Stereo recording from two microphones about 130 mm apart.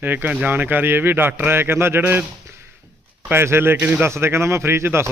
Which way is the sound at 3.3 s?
20° right (ahead or behind).